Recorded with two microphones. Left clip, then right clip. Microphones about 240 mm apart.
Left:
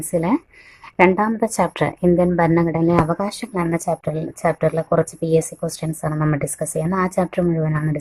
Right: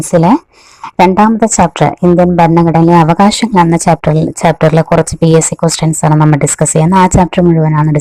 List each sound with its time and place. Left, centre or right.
0.1 s a woman's voice: right